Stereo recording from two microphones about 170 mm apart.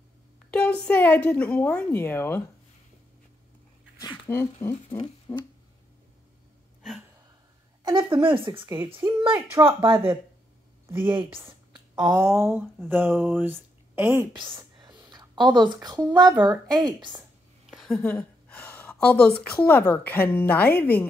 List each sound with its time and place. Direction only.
0.5 s a woman's voice: 5° left (ahead or behind)
4.3 s a woman's voice: 15° left (ahead or behind)
4.7 s speech: 35° left (ahead or behind)
6.8 s a sound: centre (ahead or behind)
7.8 s speech: 30° right (ahead or behind)
11.0 s speech: 30° right (ahead or behind); by 14.2 s 10° right (ahead or behind)
14.3 s a sound: 30° right (ahead or behind)
16.2 s speech: 25° right (ahead or behind)
17.6 s a sound: centre (ahead or behind)
19.5 s a woman's voice: 10° left (ahead or behind)